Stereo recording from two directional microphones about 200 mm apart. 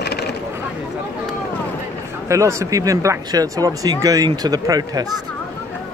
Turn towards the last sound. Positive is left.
turn(degrees=-20)  # may be behind; listen again after turning